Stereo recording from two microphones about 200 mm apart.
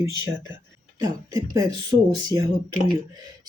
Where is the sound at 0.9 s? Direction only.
20° right (ahead or behind).